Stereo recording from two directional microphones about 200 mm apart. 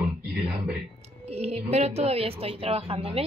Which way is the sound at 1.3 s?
30° right (ahead or behind).